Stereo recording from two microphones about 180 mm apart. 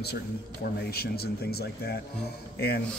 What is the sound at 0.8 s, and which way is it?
A man's voice, 60° left (ahead or behind).